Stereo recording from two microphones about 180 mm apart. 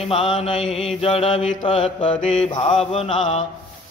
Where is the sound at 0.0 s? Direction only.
30° left (ahead or behind).